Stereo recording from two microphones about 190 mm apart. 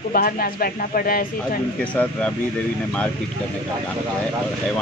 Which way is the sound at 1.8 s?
5° left (ahead or behind).